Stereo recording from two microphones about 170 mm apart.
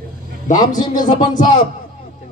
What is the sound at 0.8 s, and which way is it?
Speech, 25° left (ahead or behind).